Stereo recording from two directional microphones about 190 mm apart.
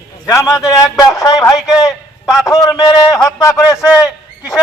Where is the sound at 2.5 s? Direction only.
20° left (ahead or behind).